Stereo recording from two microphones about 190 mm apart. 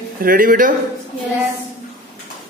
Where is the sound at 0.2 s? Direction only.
50° right (ahead or behind).